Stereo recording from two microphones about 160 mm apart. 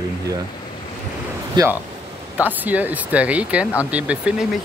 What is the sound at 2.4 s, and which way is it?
Speech, 10° right (ahead or behind).